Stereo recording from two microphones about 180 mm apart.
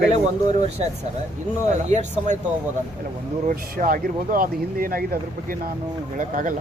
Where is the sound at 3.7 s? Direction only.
50° right (ahead or behind).